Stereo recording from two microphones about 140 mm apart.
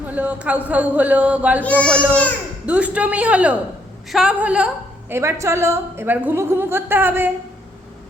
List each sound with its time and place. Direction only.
0.1 s a woman's voice: 10° right (ahead or behind)
1.6 s speech: 10° left (ahead or behind)
2.6 s a woman's voice: 10° right (ahead or behind)